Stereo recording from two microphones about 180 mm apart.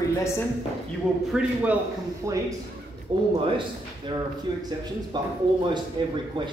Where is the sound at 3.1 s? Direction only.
30° right (ahead or behind).